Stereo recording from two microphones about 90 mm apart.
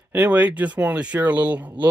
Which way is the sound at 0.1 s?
15° right (ahead or behind).